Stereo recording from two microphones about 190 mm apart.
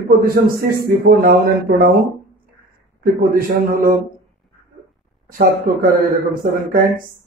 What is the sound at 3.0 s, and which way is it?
Speech, 50° right (ahead or behind).